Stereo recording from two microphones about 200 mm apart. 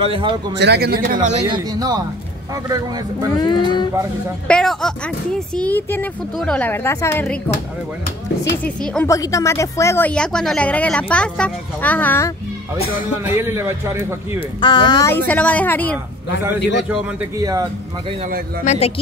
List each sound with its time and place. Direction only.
0.0 s speech: 25° right (ahead or behind)
0.6 s speech: 55° right (ahead or behind)
1.5 s a man's voice: 20° right (ahead or behind)
3.3 s speech: 20° left (ahead or behind)
4.5 s speech: 5° left (ahead or behind)
13.2 s a man's voice: 15° right (ahead or behind)
14.6 s speech: 20° left (ahead or behind)
15.2 s speech: 5° left (ahead or behind)
16.9 s a man's voice: 15° right (ahead or behind)
18.6 s speech: 35° left (ahead or behind)